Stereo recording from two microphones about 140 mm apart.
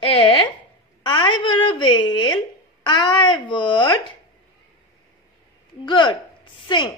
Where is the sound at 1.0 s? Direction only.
35° left (ahead or behind).